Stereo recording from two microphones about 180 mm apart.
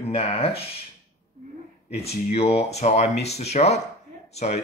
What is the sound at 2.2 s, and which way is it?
Speech, 35° left (ahead or behind).